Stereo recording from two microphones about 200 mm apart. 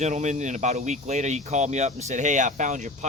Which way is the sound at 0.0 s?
35° right (ahead or behind).